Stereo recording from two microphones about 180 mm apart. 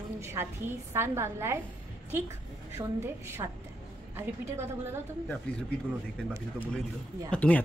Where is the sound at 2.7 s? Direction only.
15° right (ahead or behind).